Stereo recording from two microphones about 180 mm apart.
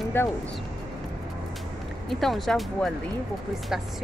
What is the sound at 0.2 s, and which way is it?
Speech, 15° left (ahead or behind).